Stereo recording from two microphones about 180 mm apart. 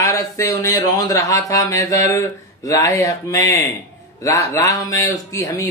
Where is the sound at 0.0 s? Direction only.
20° left (ahead or behind).